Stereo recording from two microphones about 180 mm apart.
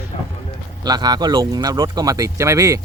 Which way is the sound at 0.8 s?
25° right (ahead or behind).